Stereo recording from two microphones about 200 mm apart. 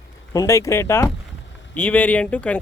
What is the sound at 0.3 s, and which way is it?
Speech, 15° left (ahead or behind).